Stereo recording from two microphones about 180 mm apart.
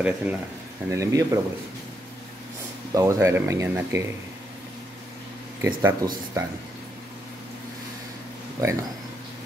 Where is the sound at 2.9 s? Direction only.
15° right (ahead or behind).